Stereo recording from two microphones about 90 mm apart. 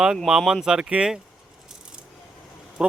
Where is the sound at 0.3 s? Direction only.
5° right (ahead or behind).